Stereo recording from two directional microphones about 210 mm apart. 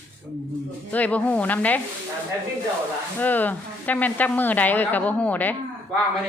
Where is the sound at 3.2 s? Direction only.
10° left (ahead or behind).